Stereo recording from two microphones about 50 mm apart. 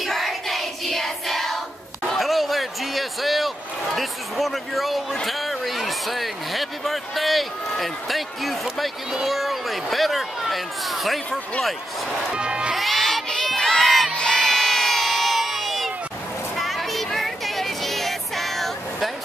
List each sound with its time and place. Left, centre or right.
0.0 s child singing: centre
2.0 s a sound: centre
5.1 s speech: centre
12.3 s speech: centre
12.7 s crowd: centre
14.1 s crowd: centre
16.5 s child singing: centre